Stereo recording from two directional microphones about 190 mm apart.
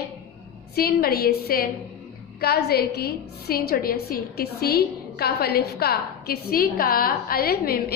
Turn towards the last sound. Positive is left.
turn(degrees=55)  # may be behind; listen again after turning